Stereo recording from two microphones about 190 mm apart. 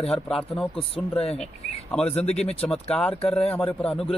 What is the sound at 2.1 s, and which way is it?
Speech, 35° left (ahead or behind).